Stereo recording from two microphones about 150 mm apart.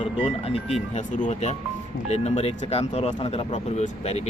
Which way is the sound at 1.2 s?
50° left (ahead or behind).